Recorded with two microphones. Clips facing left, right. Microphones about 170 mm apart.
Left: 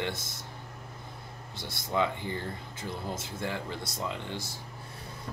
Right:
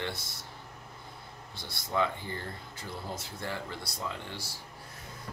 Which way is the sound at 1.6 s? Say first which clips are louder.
Left 1 dB; 20° left (ahead or behind).